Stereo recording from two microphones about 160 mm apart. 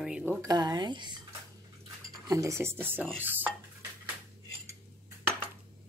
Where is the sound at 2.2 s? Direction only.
20° right (ahead or behind).